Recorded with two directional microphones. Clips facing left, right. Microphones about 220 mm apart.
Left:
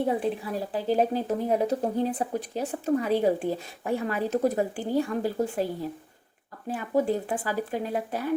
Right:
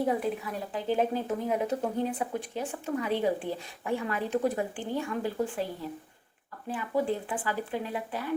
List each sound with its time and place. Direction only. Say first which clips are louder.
0.0 s speech: left 2 dB; 30° left (ahead or behind)
6.7 s speech: left 4 dB; 40° left (ahead or behind)